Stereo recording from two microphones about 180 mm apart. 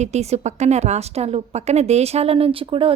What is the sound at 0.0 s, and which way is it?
A woman's voice, 35° right (ahead or behind).